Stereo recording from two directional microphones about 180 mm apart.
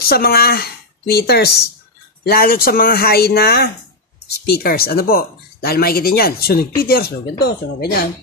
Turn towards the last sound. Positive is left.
turn(degrees=65)  # may be behind; listen again after turning